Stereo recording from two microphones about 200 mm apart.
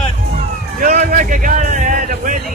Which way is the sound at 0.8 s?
45° right (ahead or behind).